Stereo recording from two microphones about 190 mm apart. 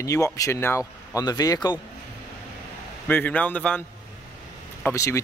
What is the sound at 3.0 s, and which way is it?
Speech, 10° left (ahead or behind).